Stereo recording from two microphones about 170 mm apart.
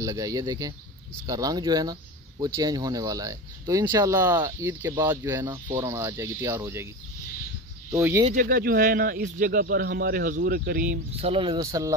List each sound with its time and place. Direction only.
0.0 s speech: 20° right (ahead or behind)
7.9 s speech: 15° right (ahead or behind)
8.3 s speech: 55° right (ahead or behind)
11.1 s speech: 35° right (ahead or behind); by 11.9 s 20° right (ahead or behind)